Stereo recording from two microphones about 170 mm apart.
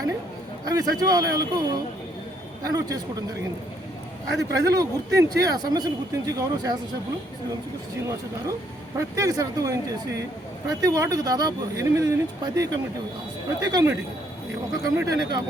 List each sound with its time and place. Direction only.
0.6 s speech: 20° right (ahead or behind)
4.6 s speech: 20° right (ahead or behind)
9.0 s speech: 20° right (ahead or behind)
10.8 s speech: 20° right (ahead or behind)